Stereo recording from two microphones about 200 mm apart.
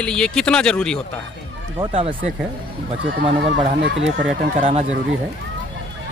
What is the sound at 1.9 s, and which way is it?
Speech, 30° right (ahead or behind).